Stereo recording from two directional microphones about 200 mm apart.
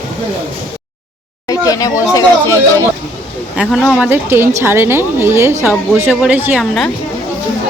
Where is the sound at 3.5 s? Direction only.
5° right (ahead or behind).